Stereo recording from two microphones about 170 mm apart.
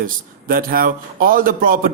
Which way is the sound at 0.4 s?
55° right (ahead or behind).